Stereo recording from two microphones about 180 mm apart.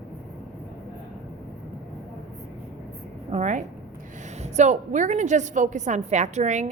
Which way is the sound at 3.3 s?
40° right (ahead or behind).